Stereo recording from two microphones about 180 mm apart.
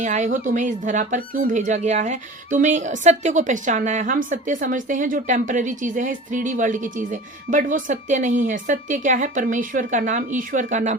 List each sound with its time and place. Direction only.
0.0 s speech: 45° right (ahead or behind)